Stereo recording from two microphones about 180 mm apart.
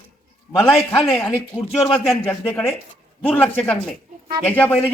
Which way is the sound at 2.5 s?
10° left (ahead or behind).